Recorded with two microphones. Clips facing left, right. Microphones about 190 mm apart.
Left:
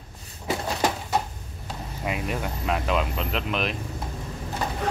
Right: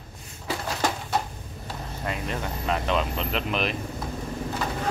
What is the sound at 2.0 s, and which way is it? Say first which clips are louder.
Speech: left 2 dB; 10° left (ahead or behind).